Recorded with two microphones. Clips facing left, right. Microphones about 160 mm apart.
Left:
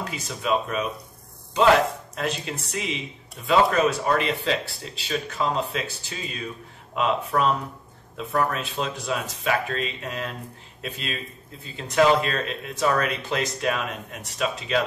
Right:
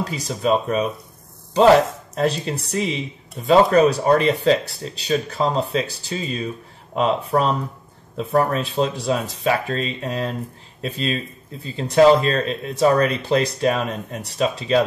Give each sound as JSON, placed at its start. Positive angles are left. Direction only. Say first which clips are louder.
{"t": 0.0, "sound": "speech", "louder": "right 7 dB", "side_deg": -35}